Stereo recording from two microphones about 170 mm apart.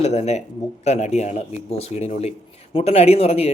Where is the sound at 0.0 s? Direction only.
40° left (ahead or behind).